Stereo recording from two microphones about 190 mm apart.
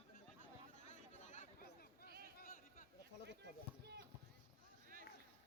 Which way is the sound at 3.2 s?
65° right (ahead or behind).